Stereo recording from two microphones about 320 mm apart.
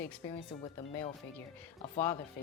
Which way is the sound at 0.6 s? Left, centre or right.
Centre.